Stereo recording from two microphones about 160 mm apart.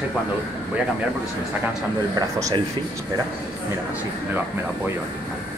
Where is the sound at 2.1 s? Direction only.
25° right (ahead or behind).